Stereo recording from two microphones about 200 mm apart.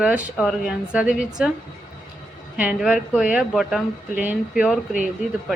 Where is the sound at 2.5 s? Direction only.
5° right (ahead or behind).